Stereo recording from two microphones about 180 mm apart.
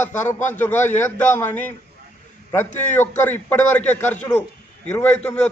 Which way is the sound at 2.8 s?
10° left (ahead or behind).